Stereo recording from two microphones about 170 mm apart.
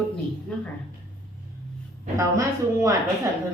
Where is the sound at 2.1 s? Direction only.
20° right (ahead or behind).